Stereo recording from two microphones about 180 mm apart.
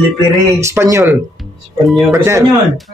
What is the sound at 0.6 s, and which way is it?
Speech, 15° right (ahead or behind).